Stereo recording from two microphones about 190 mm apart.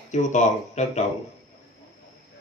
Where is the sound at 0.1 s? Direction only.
40° left (ahead or behind).